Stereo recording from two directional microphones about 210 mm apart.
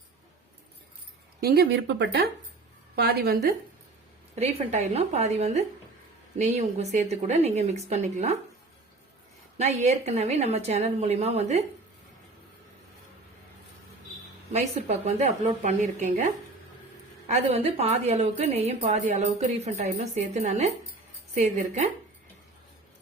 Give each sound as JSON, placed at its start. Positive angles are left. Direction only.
{"t": 1.4, "sound": "speech", "side_deg": -50}
{"t": 4.4, "sound": "a woman's voice", "side_deg": -30}
{"t": 9.6, "sound": "a woman's voice", "side_deg": -35}
{"t": 14.5, "sound": "a woman's voice", "side_deg": -30}
{"t": 17.2, "sound": "a woman's voice", "side_deg": -30}